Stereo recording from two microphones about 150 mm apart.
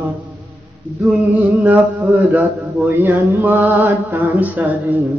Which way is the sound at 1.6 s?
10° right (ahead or behind).